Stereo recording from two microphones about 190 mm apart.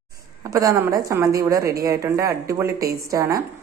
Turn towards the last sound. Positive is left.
turn(degrees=-15)  # may be behind; listen again after turning